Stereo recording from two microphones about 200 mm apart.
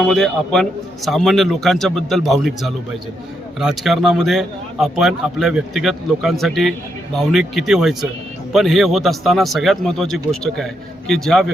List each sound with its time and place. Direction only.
0.0 s a man's voice: 5° left (ahead or behind)